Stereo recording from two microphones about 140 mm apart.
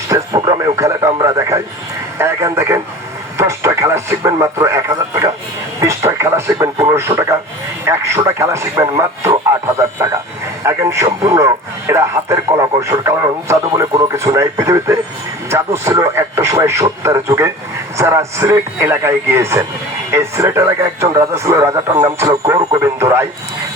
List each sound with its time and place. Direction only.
0.1 s speech: 25° right (ahead or behind)